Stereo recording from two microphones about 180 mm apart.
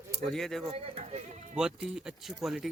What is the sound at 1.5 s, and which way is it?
A man's voice, 5° right (ahead or behind).